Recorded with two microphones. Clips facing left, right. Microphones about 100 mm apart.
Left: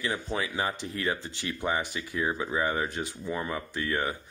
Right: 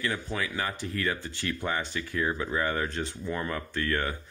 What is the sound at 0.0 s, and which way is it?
Speech, 20° left (ahead or behind).